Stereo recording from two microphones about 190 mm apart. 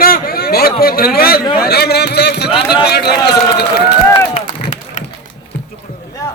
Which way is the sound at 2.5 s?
25° left (ahead or behind).